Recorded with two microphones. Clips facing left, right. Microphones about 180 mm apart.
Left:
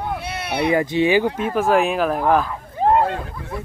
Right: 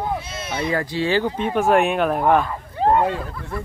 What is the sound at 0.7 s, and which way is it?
Speech, 20° left (ahead or behind).